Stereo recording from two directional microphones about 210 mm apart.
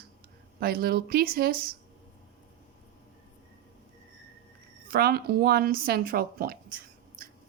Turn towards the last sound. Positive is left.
turn(degrees=-40)  # may be behind; listen again after turning